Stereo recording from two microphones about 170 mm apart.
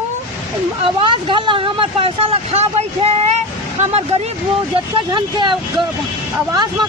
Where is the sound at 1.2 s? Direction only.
30° right (ahead or behind).